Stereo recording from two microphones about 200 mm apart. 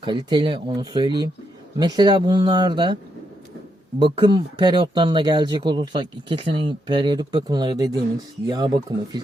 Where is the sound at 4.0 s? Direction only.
20° right (ahead or behind).